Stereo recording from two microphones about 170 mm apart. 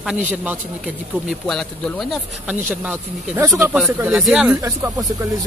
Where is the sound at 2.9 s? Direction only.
10° right (ahead or behind).